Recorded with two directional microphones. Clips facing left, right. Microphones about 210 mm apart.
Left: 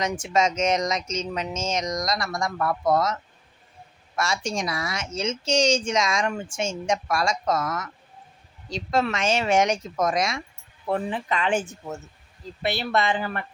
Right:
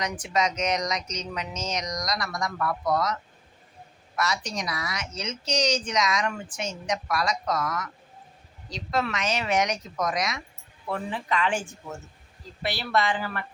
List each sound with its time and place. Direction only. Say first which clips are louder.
0.0 s a woman's voice: left 4 dB; 25° left (ahead or behind)
4.2 s a woman's voice: left 3 dB; 25° left (ahead or behind)